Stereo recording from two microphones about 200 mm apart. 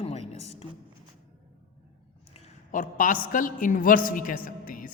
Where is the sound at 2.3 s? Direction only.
35° left (ahead or behind).